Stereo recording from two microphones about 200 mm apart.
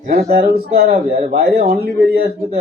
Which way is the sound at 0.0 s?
50° right (ahead or behind).